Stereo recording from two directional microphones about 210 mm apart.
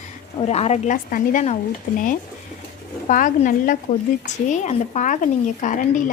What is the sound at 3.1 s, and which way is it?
A woman's voice, 40° left (ahead or behind).